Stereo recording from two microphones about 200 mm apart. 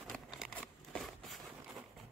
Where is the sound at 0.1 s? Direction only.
Centre (ahead or behind).